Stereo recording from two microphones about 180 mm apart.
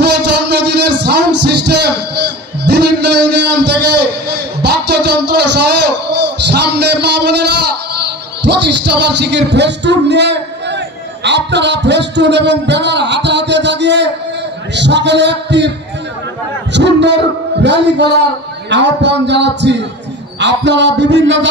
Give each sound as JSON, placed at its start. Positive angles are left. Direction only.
{"t": 0.0, "sound": "a sound", "side_deg": -70}
{"t": 2.1, "sound": "a man's voice", "side_deg": -70}
{"t": 16.7, "sound": "a man's voice", "side_deg": -75}